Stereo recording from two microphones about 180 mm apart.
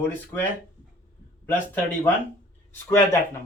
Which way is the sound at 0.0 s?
10° left (ahead or behind).